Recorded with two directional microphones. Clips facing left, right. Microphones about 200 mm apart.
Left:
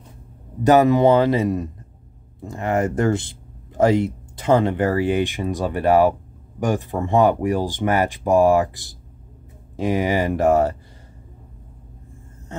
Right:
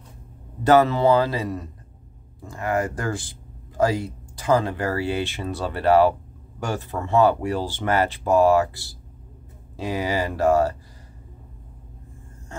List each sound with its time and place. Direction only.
0.7 s speech: 15° left (ahead or behind)